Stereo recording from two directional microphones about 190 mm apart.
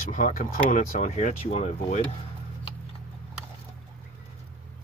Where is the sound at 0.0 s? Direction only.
45° left (ahead or behind).